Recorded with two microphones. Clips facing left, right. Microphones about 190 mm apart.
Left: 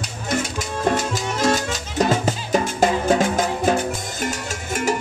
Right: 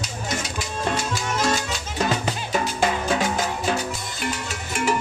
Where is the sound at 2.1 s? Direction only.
40° left (ahead or behind).